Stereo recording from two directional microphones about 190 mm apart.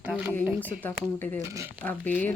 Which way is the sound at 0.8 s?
10° left (ahead or behind).